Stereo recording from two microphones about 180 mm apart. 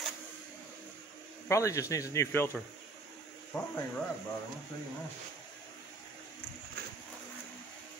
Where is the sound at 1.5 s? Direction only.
15° left (ahead or behind).